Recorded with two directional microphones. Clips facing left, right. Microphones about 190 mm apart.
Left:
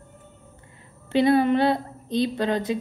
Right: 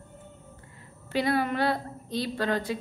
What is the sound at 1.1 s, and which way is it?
A woman's voice, 25° left (ahead or behind).